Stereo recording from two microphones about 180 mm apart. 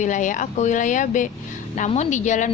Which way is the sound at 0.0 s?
45° left (ahead or behind).